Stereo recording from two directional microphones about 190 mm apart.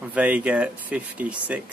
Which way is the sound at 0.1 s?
5° right (ahead or behind).